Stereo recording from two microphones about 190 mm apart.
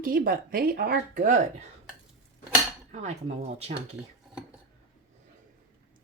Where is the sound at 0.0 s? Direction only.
50° right (ahead or behind).